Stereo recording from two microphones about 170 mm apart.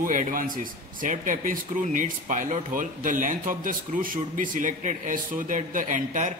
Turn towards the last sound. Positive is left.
turn(degrees=-50)  # may be behind; listen again after turning